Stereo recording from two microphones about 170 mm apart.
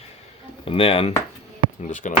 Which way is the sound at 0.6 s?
35° left (ahead or behind).